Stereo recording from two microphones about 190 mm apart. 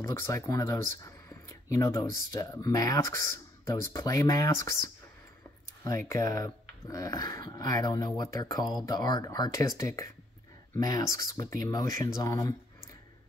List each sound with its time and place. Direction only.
0.0 s speech: 15° left (ahead or behind)